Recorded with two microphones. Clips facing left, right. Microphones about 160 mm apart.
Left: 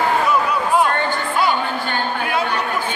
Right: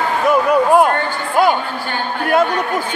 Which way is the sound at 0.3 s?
50° right (ahead or behind).